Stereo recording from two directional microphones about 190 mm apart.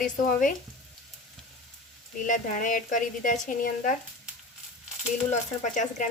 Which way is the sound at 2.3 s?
45° left (ahead or behind).